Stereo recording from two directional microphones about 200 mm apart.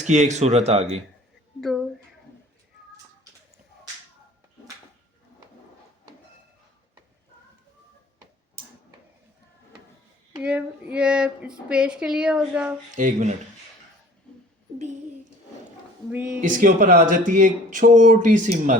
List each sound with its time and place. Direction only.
0.1 s speech: 35° right (ahead or behind)
10.3 s speech: 5° right (ahead or behind)
13.0 s speech: 40° right (ahead or behind)
16.0 s speech: 5° right (ahead or behind)
16.4 s speech: 40° right (ahead or behind)